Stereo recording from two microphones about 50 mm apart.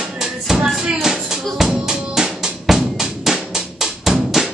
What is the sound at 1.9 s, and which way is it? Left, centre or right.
Drum, centre.